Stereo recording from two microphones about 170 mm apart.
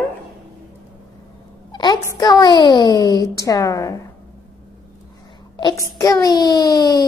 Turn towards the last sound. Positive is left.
turn(degrees=25)  # may be behind; listen again after turning